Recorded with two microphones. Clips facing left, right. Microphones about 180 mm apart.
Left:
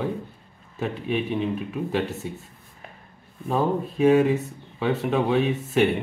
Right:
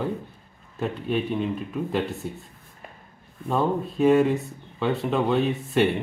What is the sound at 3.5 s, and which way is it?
Speech, 5° left (ahead or behind).